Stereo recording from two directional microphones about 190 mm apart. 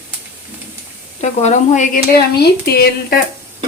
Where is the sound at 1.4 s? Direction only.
40° left (ahead or behind).